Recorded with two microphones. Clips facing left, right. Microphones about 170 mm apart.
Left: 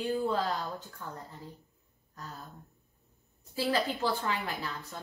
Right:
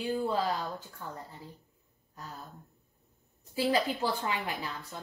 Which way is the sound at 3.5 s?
10° right (ahead or behind).